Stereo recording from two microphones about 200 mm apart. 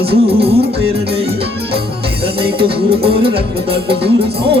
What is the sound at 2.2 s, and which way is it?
Music, 25° right (ahead or behind).